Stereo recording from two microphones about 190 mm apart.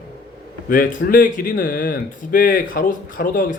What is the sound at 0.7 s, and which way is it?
Speech, 45° left (ahead or behind).